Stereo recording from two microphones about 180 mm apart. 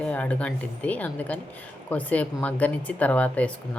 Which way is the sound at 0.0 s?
10° left (ahead or behind).